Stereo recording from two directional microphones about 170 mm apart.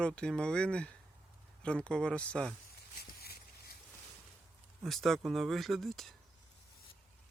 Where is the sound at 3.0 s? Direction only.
65° left (ahead or behind).